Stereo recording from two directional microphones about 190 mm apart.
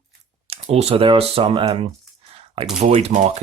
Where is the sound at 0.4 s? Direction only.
30° right (ahead or behind).